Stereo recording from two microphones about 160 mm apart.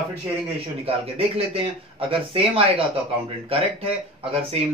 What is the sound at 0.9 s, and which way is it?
Speech, 35° right (ahead or behind).